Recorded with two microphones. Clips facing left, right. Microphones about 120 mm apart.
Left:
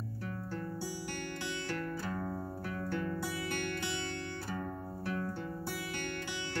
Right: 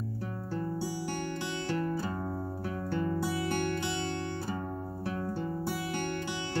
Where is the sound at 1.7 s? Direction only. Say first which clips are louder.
Right 7 dB; 25° right (ahead or behind).